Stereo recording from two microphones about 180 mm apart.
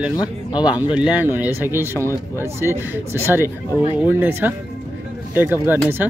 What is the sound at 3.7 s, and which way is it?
Speech, 10° left (ahead or behind).